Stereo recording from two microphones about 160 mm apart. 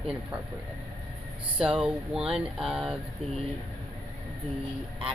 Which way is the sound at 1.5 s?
5° right (ahead or behind).